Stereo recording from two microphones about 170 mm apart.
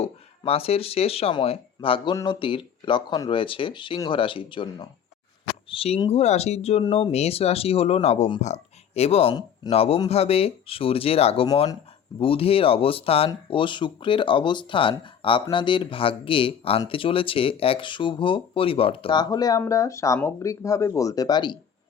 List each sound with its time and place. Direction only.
0.0 s speech: 35° left (ahead or behind)